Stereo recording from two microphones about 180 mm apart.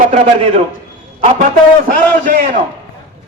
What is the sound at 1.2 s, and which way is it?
Speech, 35° right (ahead or behind).